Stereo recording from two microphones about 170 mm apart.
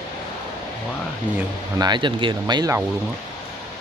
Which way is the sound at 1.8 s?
25° right (ahead or behind).